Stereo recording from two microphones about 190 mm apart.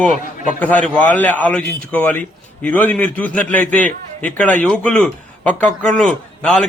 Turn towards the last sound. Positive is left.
turn(degrees=5)  # may be behind; listen again after turning